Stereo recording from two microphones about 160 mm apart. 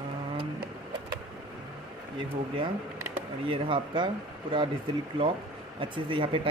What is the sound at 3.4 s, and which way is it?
Speech, 30° right (ahead or behind).